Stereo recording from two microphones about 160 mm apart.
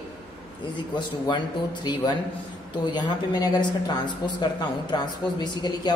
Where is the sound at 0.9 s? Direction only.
30° left (ahead or behind).